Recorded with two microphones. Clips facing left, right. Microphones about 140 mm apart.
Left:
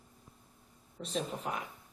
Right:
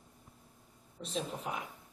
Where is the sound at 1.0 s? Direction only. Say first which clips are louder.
Left 2 dB; centre (ahead or behind).